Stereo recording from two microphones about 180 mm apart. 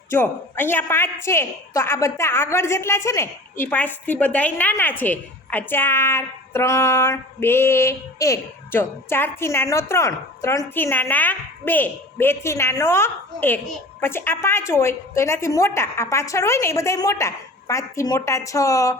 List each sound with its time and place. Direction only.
0.1 s a woman's voice: 10° left (ahead or behind)